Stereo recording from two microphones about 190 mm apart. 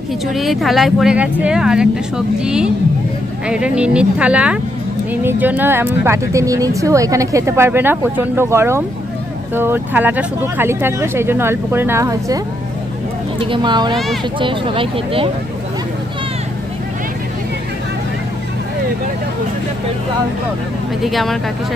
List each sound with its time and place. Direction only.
0.3 s speech: centre (ahead or behind); by 12.4 s 15° right (ahead or behind)
13.4 s speech: 25° right (ahead or behind)
21.0 s speech: centre (ahead or behind)